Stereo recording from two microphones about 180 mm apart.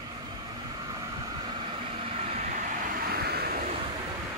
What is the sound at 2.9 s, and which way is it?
Vehicle, 60° right (ahead or behind).